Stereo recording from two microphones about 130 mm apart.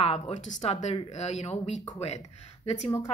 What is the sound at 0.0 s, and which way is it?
Speech, 50° left (ahead or behind).